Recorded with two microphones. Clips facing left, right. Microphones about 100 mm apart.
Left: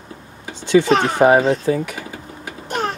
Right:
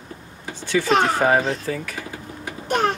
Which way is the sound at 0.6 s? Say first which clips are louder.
Left 4 dB; 20° left (ahead or behind).